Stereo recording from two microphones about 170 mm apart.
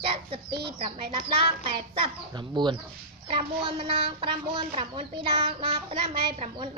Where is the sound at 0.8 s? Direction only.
30° right (ahead or behind).